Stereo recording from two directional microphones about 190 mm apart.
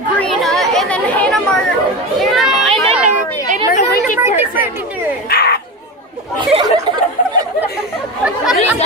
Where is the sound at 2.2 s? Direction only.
Centre (ahead or behind).